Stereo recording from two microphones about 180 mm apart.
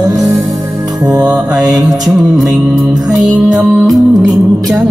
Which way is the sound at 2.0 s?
5° right (ahead or behind).